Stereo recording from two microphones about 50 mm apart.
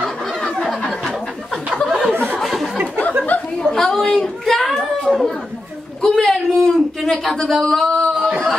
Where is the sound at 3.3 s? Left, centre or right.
Left.